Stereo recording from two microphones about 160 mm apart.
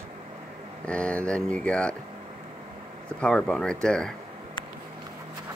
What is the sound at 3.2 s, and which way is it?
Speech, 5° left (ahead or behind).